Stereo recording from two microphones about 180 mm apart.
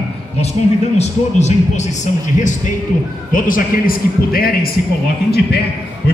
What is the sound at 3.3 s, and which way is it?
A man's voice, 50° left (ahead or behind).